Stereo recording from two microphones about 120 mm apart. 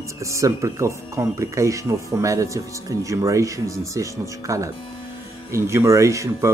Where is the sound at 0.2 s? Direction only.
25° right (ahead or behind).